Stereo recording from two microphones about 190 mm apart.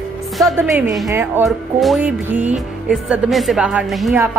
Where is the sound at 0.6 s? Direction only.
Centre (ahead or behind).